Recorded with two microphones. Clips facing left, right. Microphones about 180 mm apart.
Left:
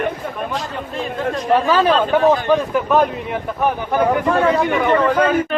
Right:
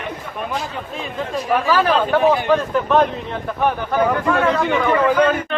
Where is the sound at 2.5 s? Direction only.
5° left (ahead or behind).